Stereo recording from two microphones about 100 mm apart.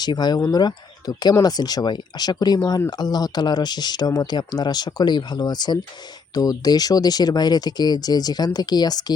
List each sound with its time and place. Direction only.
0.0 s speech: 45° left (ahead or behind)